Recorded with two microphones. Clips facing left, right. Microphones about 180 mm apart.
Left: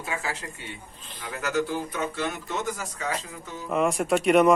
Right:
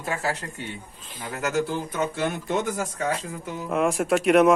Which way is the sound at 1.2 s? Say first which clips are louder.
Right 2 dB; 50° right (ahead or behind).